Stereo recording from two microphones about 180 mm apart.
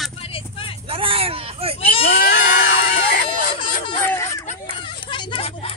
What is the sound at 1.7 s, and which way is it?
Baby cry, 30° left (ahead or behind).